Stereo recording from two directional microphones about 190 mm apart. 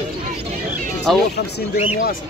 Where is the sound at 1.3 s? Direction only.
55° left (ahead or behind).